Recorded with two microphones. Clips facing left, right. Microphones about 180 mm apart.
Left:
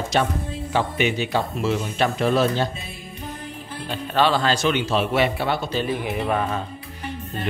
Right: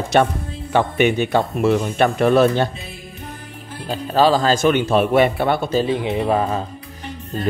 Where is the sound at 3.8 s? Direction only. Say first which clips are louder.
Right 5 dB; 40° right (ahead or behind); by 5.8 s 55° right (ahead or behind).